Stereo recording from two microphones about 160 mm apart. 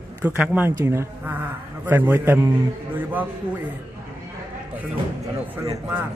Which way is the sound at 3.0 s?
10° right (ahead or behind).